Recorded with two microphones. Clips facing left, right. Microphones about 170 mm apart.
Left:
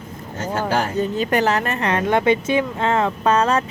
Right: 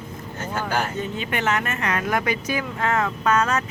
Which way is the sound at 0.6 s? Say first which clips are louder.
Left 5 dB; 35° left (ahead or behind).